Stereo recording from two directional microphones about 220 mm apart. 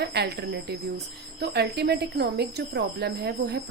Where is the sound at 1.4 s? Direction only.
50° right (ahead or behind).